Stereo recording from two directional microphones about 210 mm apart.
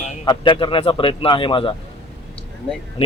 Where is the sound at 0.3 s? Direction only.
20° left (ahead or behind).